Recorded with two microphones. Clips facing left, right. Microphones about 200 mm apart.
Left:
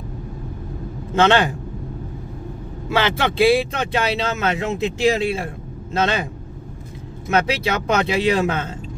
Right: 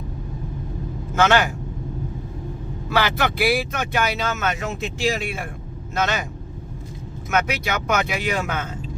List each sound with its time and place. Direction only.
1.1 s speech: 25° left (ahead or behind)
2.9 s speech: 25° left (ahead or behind)
7.2 s speech: 30° left (ahead or behind)